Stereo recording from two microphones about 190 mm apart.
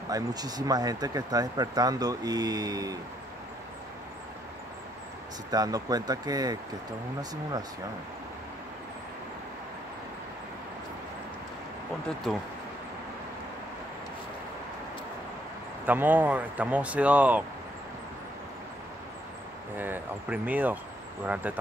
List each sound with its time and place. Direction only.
0.1 s speech: 20° right (ahead or behind)
5.5 s speech: 20° right (ahead or behind)
15.8 s speech: 10° right (ahead or behind)
19.8 s speech: 10° right (ahead or behind)